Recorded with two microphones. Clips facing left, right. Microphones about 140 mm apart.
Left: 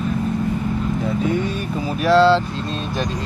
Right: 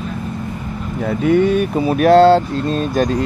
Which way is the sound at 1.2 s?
65° right (ahead or behind).